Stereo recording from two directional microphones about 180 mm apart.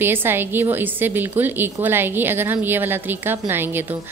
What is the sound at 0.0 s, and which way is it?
A woman's voice, 10° right (ahead or behind).